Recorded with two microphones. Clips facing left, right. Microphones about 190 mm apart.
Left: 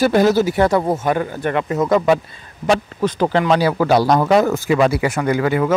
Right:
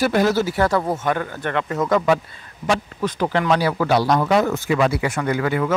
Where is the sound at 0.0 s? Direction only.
25° left (ahead or behind).